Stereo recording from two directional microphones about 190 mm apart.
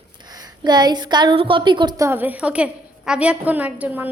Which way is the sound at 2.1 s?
10° right (ahead or behind).